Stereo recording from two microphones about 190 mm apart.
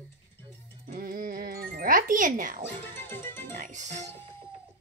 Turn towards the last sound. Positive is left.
turn(degrees=-40)  # may be behind; listen again after turning